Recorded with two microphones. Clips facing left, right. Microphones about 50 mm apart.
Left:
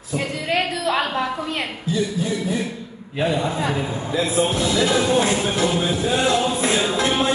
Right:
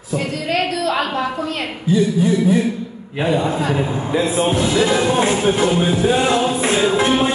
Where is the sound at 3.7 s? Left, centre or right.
Right.